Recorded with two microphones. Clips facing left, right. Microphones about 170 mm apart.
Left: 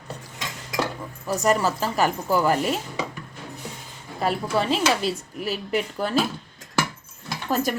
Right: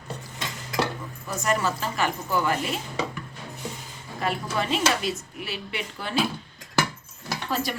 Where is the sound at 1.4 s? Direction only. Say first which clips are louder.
Left 4 dB; 40° left (ahead or behind).